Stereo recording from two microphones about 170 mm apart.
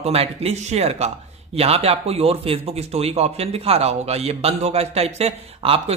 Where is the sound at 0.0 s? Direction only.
35° right (ahead or behind).